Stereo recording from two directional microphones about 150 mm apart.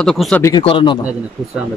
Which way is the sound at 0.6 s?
35° left (ahead or behind).